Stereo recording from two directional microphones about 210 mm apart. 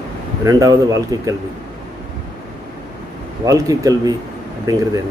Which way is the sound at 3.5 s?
15° right (ahead or behind).